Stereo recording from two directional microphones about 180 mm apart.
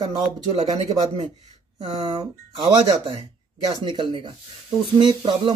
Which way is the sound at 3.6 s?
25° right (ahead or behind).